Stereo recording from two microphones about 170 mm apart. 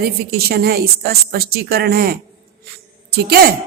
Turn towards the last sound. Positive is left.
turn(degrees=-65)  # may be behind; listen again after turning